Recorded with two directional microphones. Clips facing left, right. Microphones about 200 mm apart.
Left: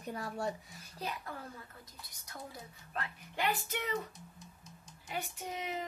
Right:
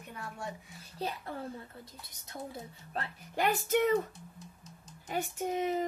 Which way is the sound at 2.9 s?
40° right (ahead or behind).